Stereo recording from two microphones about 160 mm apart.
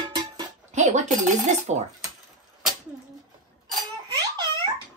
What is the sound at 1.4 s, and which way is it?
Dishes, 45° right (ahead or behind).